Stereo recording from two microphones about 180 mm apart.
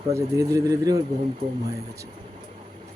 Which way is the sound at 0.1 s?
15° right (ahead or behind).